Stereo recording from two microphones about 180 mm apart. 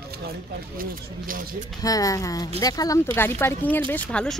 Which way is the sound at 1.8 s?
20° left (ahead or behind).